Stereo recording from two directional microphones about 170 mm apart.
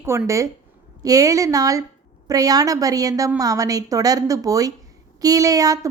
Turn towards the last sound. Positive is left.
turn(degrees=-20)  # may be behind; listen again after turning